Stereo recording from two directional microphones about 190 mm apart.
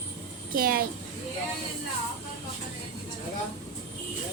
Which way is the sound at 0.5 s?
50° right (ahead or behind).